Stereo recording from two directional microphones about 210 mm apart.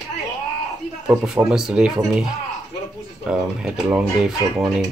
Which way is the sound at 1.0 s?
5° right (ahead or behind).